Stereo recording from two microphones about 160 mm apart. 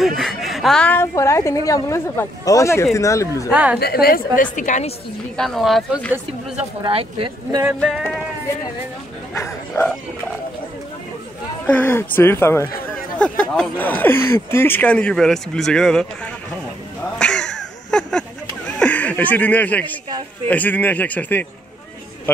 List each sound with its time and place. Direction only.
0.0 s a woman's voice: centre (ahead or behind); by 3.3 s 20° left (ahead or behind)
3.4 s a woman's voice: 10° right (ahead or behind)
3.8 s a woman's voice: 75° left (ahead or behind); by 4.9 s 50° left (ahead or behind)
5.4 s speech: centre (ahead or behind)
6.8 s speech: 35° right (ahead or behind)
7.8 s speech: centre (ahead or behind)
9.3 s a woman's voice: 15° left (ahead or behind)
11.6 s a woman's voice: 10° left (ahead or behind)
17.2 s a sound: 5° left (ahead or behind)
18.8 s a woman's voice: 10° left (ahead or behind)